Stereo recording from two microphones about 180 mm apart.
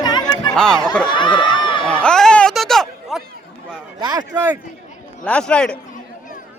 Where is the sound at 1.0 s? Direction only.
25° left (ahead or behind).